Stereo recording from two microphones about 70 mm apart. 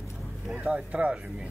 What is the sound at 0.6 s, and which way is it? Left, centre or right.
Speech, centre.